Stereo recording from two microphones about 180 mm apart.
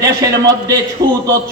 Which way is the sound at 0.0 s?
20° right (ahead or behind).